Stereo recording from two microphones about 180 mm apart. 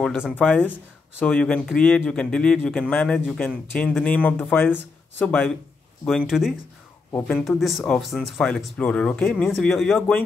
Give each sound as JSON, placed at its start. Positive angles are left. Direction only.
{"t": 0.4, "sound": "speech", "side_deg": 5}
{"t": 7.1, "sound": "speech", "side_deg": 15}
{"t": 7.3, "sound": "speech", "side_deg": 0}